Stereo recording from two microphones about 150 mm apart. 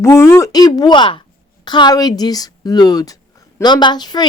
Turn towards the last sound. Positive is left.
turn(degrees=25)  # may be behind; listen again after turning